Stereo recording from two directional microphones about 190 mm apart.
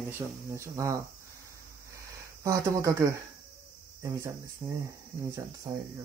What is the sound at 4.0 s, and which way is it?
Speech, 15° right (ahead or behind).